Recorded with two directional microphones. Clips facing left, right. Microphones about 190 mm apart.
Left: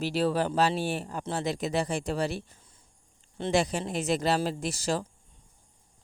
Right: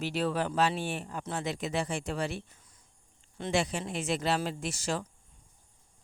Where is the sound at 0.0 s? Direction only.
35° left (ahead or behind).